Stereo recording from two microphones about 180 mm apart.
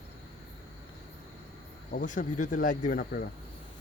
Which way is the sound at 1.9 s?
45° left (ahead or behind).